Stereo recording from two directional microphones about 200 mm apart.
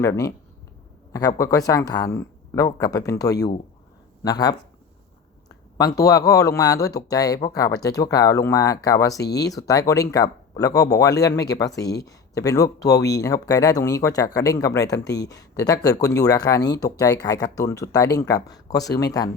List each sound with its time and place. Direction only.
0.0 s speech: 15° left (ahead or behind)
1.4 s speech: 15° left (ahead or behind)
5.7 s speech: 15° left (ahead or behind)
9.2 s speech: 55° left (ahead or behind)
9.5 s speech: 15° left (ahead or behind)